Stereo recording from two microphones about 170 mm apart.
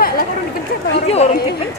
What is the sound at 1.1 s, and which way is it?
Speech, 40° left (ahead or behind).